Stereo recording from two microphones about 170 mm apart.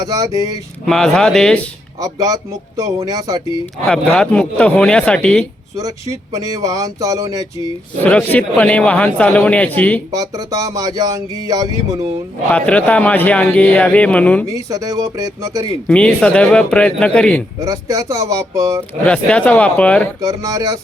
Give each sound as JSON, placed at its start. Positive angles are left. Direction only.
{"t": 0.0, "sound": "speech", "side_deg": -20}
{"t": 0.9, "sound": "a man's voice", "side_deg": 5}
{"t": 2.0, "sound": "speech", "side_deg": -20}
{"t": 3.8, "sound": "a man's voice", "side_deg": 5}
{"t": 5.7, "sound": "speech", "side_deg": -20}
{"t": 8.0, "sound": "a man's voice", "side_deg": 10}
{"t": 10.1, "sound": "speech", "side_deg": -20}
{"t": 12.5, "sound": "a man's voice", "side_deg": 10}
{"t": 14.4, "sound": "speech", "side_deg": -20}
{"t": 15.9, "sound": "a man's voice", "side_deg": 5}
{"t": 17.6, "sound": "speech", "side_deg": -20}
{"t": 19.0, "sound": "a man's voice", "side_deg": 5}
{"t": 20.2, "sound": "speech", "side_deg": -20}